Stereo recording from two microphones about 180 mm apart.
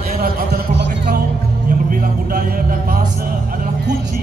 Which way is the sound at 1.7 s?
50° right (ahead or behind).